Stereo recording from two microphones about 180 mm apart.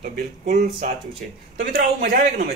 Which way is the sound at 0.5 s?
35° right (ahead or behind).